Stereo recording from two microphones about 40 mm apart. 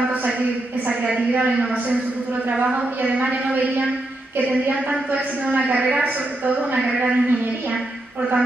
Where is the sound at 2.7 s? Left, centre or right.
Right.